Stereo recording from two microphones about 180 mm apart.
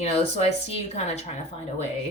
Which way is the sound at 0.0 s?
35° left (ahead or behind).